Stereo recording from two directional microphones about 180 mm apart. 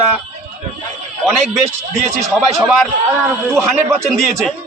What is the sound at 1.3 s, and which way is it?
A man's voice, centre (ahead or behind).